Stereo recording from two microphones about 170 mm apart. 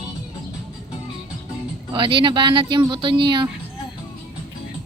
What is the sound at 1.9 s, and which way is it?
Speech, 30° right (ahead or behind).